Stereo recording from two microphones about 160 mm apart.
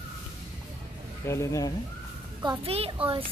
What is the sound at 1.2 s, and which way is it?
Speech, 20° left (ahead or behind).